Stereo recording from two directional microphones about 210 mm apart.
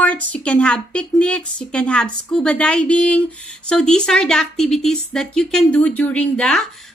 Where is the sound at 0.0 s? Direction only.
5° left (ahead or behind).